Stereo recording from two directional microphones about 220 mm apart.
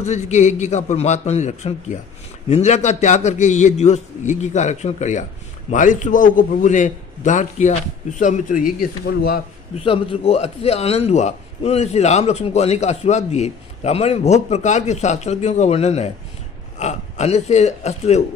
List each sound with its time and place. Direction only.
0.0 s a man's voice: 30° left (ahead or behind)
9.8 s a man's voice: 25° left (ahead or behind)